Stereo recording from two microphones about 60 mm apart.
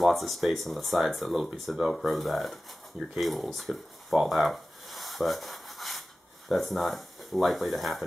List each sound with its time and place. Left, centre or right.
0.0 s speech: centre
3.2 s a sound: centre
6.5 s speech: centre